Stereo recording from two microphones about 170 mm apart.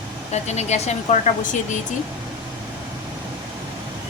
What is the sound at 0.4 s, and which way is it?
Speech, 40° left (ahead or behind).